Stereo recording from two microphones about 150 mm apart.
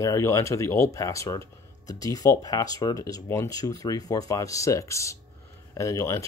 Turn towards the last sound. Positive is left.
turn(degrees=20)  # may be behind; listen again after turning